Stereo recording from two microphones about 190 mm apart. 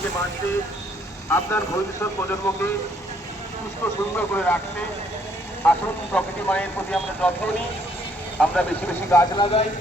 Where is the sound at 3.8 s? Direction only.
10° left (ahead or behind).